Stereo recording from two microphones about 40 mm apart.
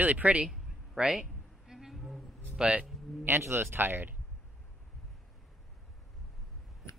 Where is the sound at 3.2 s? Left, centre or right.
Right.